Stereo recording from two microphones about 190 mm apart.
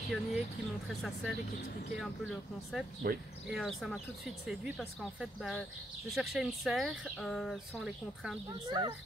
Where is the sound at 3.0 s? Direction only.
50° right (ahead or behind).